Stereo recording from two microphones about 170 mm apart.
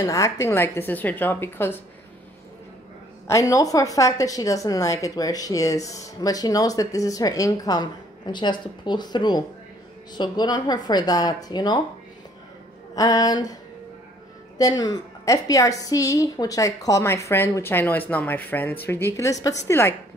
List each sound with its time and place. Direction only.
0.0 s a woman's voice: 20° left (ahead or behind)
3.3 s a woman's voice: 20° left (ahead or behind)
12.9 s a woman's voice: 20° left (ahead or behind)
14.6 s a woman's voice: 20° left (ahead or behind)